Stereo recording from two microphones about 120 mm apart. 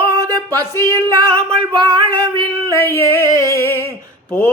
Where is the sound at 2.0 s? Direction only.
35° right (ahead or behind).